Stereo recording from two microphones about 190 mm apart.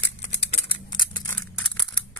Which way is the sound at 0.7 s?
25° left (ahead or behind).